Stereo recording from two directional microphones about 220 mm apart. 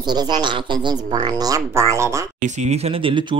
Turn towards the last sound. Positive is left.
turn(degrees=-25)  # may be behind; listen again after turning